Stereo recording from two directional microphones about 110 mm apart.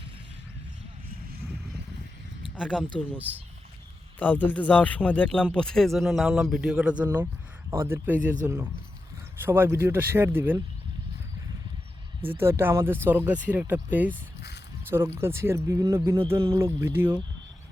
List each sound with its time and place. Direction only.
3.2 s speech: 15° right (ahead or behind)
4.2 s speech: 15° left (ahead or behind); by 10.6 s 20° right (ahead or behind)
12.2 s speech: 20° right (ahead or behind)